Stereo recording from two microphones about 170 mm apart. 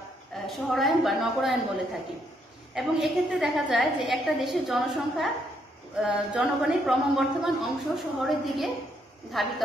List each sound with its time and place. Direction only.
0.5 s speech: centre (ahead or behind)
2.7 s speech: centre (ahead or behind)